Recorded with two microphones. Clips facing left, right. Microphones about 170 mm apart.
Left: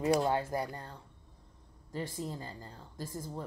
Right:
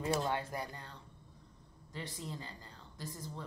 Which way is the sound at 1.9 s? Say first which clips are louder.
Left 6 dB; 45° left (ahead or behind).